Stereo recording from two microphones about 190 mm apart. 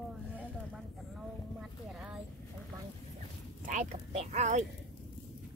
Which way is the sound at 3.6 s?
35° right (ahead or behind).